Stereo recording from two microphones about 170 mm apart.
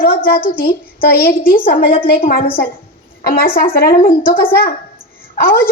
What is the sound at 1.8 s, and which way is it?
Speech, 30° left (ahead or behind).